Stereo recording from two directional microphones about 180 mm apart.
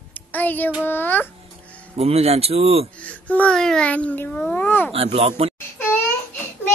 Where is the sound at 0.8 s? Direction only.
10° left (ahead or behind).